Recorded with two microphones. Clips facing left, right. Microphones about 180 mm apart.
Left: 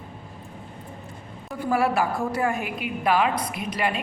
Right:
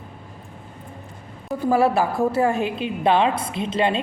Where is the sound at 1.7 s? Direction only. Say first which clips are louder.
Right 3 dB; 25° right (ahead or behind).